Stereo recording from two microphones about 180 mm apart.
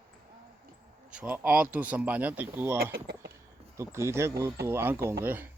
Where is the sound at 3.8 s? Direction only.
15° right (ahead or behind).